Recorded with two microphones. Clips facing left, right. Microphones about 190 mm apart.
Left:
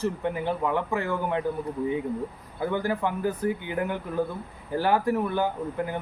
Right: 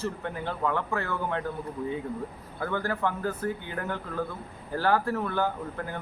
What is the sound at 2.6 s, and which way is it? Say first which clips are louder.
Speech: left 3 dB; 15° left (ahead or behind).